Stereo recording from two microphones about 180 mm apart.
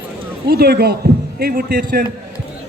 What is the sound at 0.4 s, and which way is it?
Speech, 60° right (ahead or behind).